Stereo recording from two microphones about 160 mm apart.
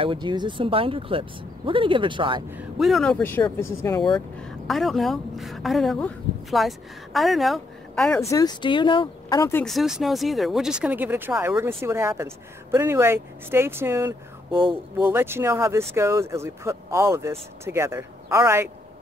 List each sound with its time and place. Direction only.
0.0 s speech: 30° right (ahead or behind)
2.8 s a woman's voice: centre (ahead or behind); by 4.2 s 25° left (ahead or behind)
4.4 s a woman's voice: centre (ahead or behind)
8.2 s speech: 20° left (ahead or behind)
9.4 s speech: 15° left (ahead or behind)
9.7 s speech: centre (ahead or behind); by 18.7 s 15° right (ahead or behind)